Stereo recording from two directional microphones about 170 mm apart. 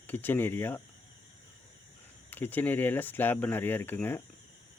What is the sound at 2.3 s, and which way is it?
Speech, 10° left (ahead or behind).